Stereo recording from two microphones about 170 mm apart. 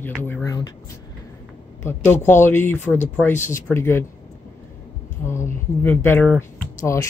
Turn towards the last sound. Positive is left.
turn(degrees=15)  # may be behind; listen again after turning